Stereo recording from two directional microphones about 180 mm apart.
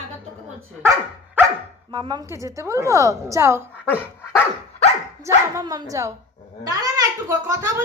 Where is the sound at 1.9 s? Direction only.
25° right (ahead or behind).